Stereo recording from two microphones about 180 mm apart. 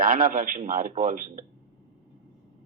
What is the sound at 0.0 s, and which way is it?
A man's voice, 50° right (ahead or behind).